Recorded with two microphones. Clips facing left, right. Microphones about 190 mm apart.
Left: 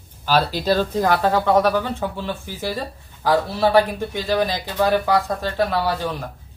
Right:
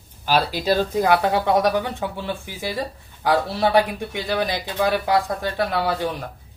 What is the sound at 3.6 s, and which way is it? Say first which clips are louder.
Speech: left 2 dB; 15° right (ahead or behind).